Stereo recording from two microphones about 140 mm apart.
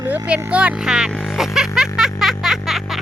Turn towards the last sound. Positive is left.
turn(degrees=0)  # may be behind; listen again after turning